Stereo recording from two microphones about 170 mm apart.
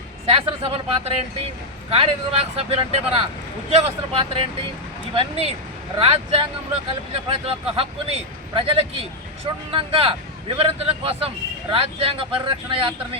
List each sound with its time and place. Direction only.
0.3 s speech: 35° right (ahead or behind)